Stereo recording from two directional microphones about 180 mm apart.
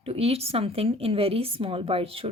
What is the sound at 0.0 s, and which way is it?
A woman's voice, 35° right (ahead or behind).